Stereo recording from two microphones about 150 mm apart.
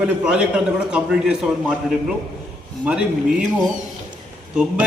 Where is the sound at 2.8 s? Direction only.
5° right (ahead or behind).